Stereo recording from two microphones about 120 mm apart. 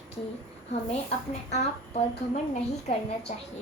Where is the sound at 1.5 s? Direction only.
65° left (ahead or behind).